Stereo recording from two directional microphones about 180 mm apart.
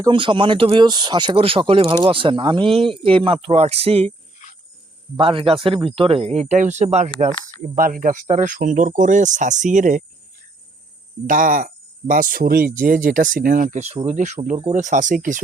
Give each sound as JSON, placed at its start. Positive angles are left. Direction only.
{"t": 0.0, "sound": "speech", "side_deg": -25}
{"t": 4.4, "sound": "a sound", "side_deg": 45}
{"t": 5.1, "sound": "speech", "side_deg": -30}
{"t": 7.8, "sound": "speech", "side_deg": -50}
{"t": 11.3, "sound": "speech", "side_deg": -50}